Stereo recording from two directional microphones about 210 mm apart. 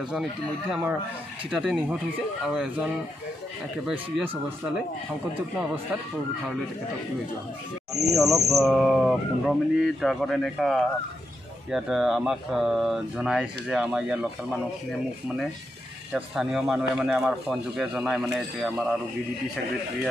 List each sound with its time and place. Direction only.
0.1 s speech: 5° right (ahead or behind)
8.2 s speech: centre (ahead or behind)